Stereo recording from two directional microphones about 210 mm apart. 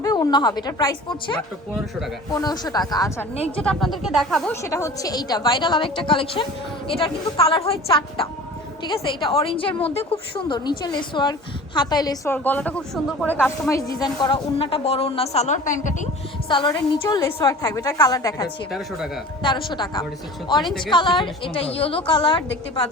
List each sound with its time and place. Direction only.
0.0 s a woman's voice: 15° left (ahead or behind)
3.3 s a woman's voice: 30° left (ahead or behind)
3.6 s speech: 5° left (ahead or behind)
4.6 s a woman's voice: 15° left (ahead or behind); by 16.0 s 35° left (ahead or behind)
16.5 s a woman's voice: 25° left (ahead or behind)
21.2 s a woman's voice: 25° left (ahead or behind)